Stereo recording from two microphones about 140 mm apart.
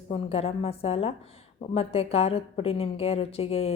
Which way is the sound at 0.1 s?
45° left (ahead or behind).